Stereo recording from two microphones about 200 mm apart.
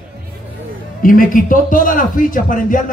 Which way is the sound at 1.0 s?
45° left (ahead or behind).